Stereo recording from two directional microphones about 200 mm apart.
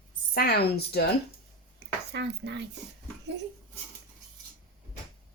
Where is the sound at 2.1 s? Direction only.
60° right (ahead or behind).